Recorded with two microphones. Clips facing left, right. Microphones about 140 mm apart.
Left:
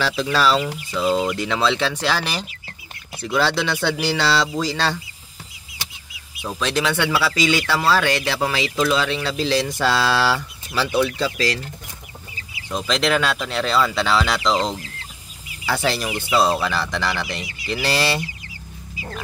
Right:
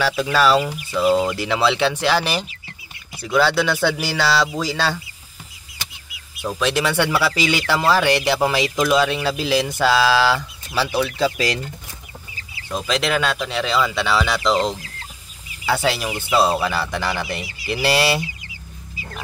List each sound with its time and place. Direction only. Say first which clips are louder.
0.0 s speech: right 2 dB; centre (ahead or behind)
6.4 s speech: right 2 dB; 5° right (ahead or behind)
12.6 s speech: left 1 dB; 5° right (ahead or behind)
14.5 s chicken: right 3 dB; 20° left (ahead or behind)
15.6 s speech: right 2 dB; centre (ahead or behind)